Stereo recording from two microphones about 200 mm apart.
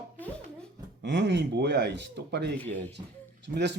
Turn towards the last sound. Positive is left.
turn(degrees=-60)  # may be behind; listen again after turning